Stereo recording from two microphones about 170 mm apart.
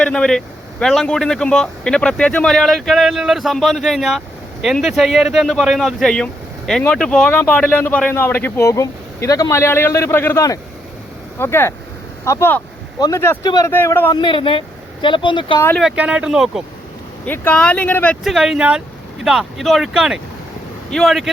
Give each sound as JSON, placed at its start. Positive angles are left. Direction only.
{"t": 0.0, "sound": "a man's voice", "side_deg": 5}
{"t": 14.1, "sound": "speech", "side_deg": 30}
{"t": 15.8, "sound": "a man's voice", "side_deg": -5}
{"t": 17.2, "sound": "a man's voice", "side_deg": 10}